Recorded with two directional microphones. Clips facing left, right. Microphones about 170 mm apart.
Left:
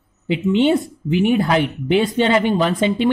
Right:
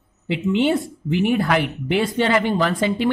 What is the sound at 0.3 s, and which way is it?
Speech, 20° left (ahead or behind).